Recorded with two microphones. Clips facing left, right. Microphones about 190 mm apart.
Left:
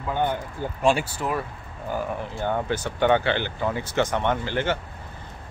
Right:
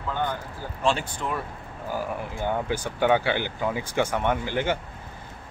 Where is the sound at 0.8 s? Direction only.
10° left (ahead or behind).